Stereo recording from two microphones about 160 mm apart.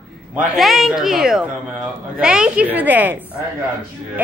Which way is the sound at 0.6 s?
Centre (ahead or behind).